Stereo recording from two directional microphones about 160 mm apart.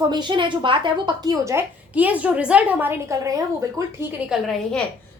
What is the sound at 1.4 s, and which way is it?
A woman's voice, 15° right (ahead or behind).